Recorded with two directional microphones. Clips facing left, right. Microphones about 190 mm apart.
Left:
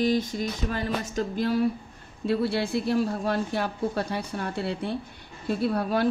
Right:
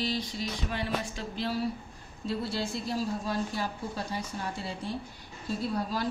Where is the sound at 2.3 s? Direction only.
60° left (ahead or behind).